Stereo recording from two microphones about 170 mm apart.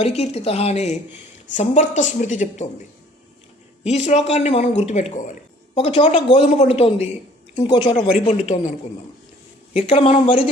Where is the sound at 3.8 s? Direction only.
40° left (ahead or behind).